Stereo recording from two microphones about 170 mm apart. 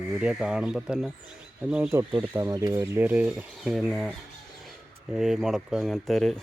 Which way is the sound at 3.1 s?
10° right (ahead or behind).